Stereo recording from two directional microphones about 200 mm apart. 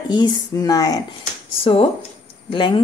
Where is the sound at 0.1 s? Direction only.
20° left (ahead or behind).